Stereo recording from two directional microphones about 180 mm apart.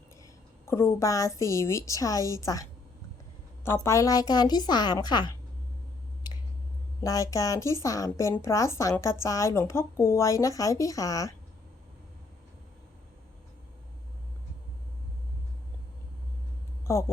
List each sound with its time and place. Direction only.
0.2 s a woman's voice: 15° left (ahead or behind)
7.0 s a woman's voice: 20° left (ahead or behind)
16.8 s speech: 15° left (ahead or behind)